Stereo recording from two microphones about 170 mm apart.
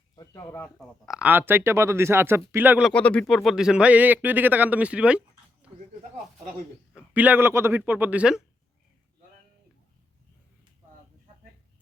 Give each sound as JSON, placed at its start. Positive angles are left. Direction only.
{"t": 0.2, "sound": "a sound", "side_deg": 20}
{"t": 0.8, "sound": "speech", "side_deg": 0}
{"t": 2.9, "sound": "speech", "side_deg": 5}
{"t": 7.1, "sound": "speech", "side_deg": -10}